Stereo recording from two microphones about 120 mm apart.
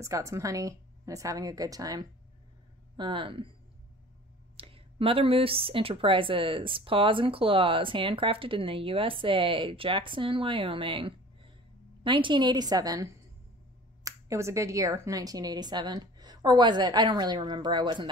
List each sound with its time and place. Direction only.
0.0 s a woman's voice: 25° right (ahead or behind)
3.0 s speech: 45° right (ahead or behind)
4.6 s speech: 50° right (ahead or behind)